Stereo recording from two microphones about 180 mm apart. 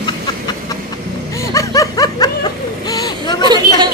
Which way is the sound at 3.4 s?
25° right (ahead or behind).